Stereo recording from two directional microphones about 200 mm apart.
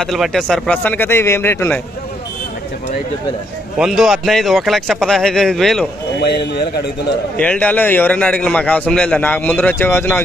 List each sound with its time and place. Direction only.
0.0 s a man's voice: centre (ahead or behind)
3.7 s a man's voice: centre (ahead or behind)
6.1 s a man's voice: 55° left (ahead or behind)
7.3 s a man's voice: 5° left (ahead or behind)